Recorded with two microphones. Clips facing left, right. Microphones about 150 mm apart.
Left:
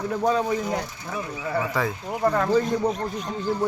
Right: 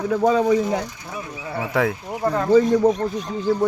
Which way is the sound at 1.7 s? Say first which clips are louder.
Right 9 dB; 65° right (ahead or behind).